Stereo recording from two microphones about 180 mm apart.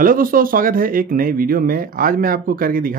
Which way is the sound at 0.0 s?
50° right (ahead or behind).